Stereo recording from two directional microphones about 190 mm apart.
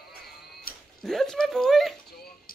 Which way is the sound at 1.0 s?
Centre (ahead or behind).